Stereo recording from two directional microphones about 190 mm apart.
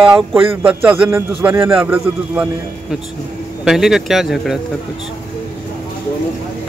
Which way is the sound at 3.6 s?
Centre (ahead or behind).